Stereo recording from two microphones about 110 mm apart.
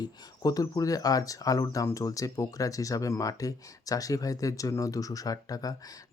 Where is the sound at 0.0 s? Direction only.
35° left (ahead or behind).